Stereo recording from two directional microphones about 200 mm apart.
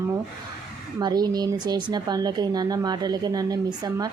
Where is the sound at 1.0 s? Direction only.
20° right (ahead or behind).